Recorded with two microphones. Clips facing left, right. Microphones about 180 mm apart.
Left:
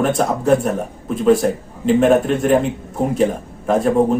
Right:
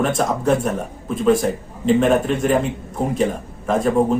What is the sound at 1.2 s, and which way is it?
Speech, centre (ahead or behind).